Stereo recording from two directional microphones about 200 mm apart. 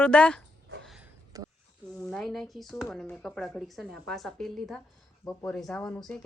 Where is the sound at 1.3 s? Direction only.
20° right (ahead or behind).